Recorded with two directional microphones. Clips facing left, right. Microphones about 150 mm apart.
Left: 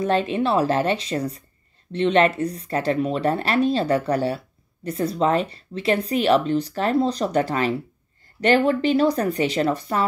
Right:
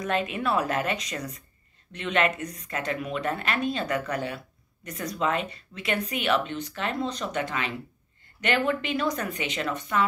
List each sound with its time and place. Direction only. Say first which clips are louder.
0.0 s speech: left 7 dB; 30° left (ahead or behind)